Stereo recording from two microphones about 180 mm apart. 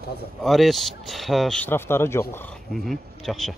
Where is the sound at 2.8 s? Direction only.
Centre (ahead or behind).